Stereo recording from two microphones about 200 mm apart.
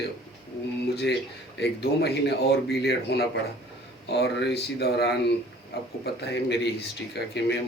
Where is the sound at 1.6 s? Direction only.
55° left (ahead or behind).